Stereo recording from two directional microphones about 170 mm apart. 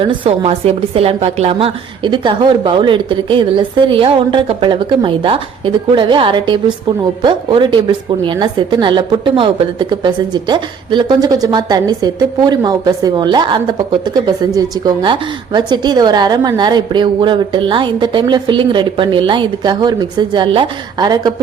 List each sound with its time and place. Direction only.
0.0 s a woman's voice: 30° right (ahead or behind)